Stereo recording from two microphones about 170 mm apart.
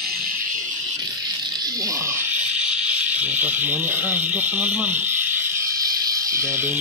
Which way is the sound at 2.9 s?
10° right (ahead or behind).